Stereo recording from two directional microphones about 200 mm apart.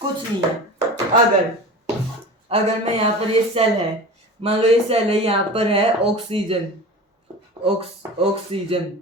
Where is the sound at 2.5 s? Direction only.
30° right (ahead or behind).